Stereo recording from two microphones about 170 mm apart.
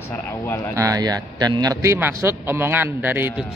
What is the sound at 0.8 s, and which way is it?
A man's voice, 20° right (ahead or behind).